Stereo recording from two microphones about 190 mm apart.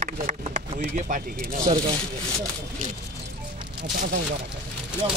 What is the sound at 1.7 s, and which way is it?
Speech, 20° right (ahead or behind).